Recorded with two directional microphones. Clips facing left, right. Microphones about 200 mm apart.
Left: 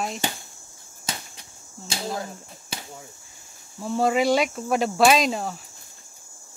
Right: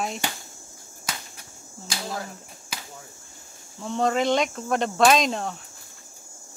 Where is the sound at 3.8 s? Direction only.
5° left (ahead or behind).